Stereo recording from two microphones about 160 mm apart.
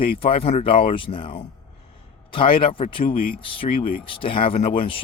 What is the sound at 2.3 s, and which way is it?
Speech, 35° left (ahead or behind).